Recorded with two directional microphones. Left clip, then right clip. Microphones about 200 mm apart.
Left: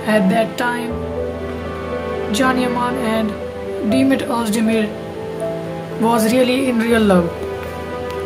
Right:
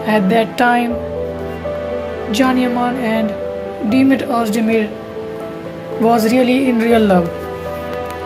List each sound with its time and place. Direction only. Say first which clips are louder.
0.3 s music: right 5 dB; 20° right (ahead or behind)
2.3 s speech: right 2 dB; 5° right (ahead or behind)
6.0 s speech: right 2 dB; 5° right (ahead or behind)